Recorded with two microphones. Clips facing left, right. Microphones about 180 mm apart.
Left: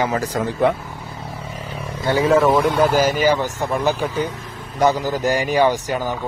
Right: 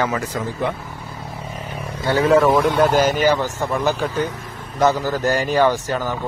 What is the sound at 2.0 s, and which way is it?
Speech, 10° left (ahead or behind).